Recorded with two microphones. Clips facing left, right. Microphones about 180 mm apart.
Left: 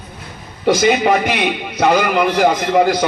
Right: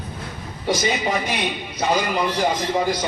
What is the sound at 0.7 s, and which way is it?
A man's voice, 70° left (ahead or behind).